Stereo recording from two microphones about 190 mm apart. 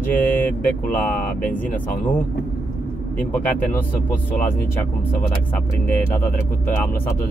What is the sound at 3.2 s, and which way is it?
Speech, 10° left (ahead or behind).